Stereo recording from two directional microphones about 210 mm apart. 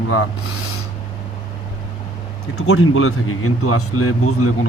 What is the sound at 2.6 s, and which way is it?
Speech, 85° left.